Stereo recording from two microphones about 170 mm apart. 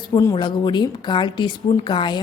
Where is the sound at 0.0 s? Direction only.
20° left (ahead or behind).